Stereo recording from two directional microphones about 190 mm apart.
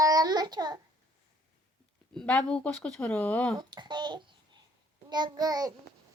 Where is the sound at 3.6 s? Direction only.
25° right (ahead or behind).